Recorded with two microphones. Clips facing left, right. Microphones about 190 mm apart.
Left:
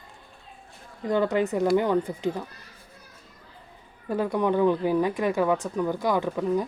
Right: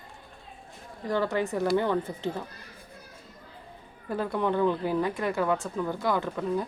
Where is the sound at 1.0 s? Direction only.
20° left (ahead or behind).